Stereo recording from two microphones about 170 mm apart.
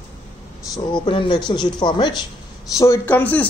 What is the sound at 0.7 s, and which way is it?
Speech, 30° left (ahead or behind).